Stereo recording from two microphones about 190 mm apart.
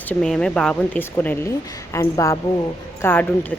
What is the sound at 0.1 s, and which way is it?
Speech, 5° left (ahead or behind).